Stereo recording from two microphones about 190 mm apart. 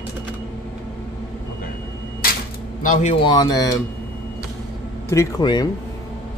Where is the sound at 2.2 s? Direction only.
50° left (ahead or behind).